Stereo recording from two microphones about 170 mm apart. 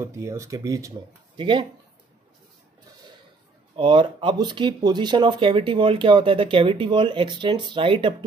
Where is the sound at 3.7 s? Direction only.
30° right (ahead or behind).